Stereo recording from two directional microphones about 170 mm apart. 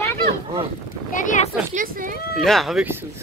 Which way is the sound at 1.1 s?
50° left (ahead or behind).